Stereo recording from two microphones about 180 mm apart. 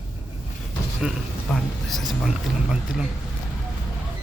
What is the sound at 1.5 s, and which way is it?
Speech, 5° left (ahead or behind).